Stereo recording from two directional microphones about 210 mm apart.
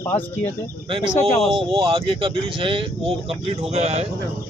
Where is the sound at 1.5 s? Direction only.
25° right (ahead or behind).